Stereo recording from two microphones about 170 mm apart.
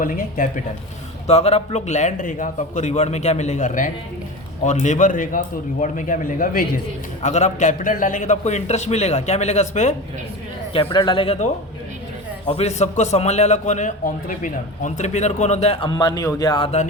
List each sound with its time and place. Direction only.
0.0 s a man's voice: 50° left (ahead or behind)
1.3 s a man's voice: 40° left (ahead or behind)
7.2 s a man's voice: 40° left (ahead or behind)
10.7 s a man's voice: 30° left (ahead or behind)
12.5 s a man's voice: 40° left (ahead or behind)